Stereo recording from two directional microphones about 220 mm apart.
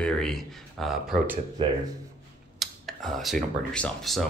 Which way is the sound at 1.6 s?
20° right (ahead or behind).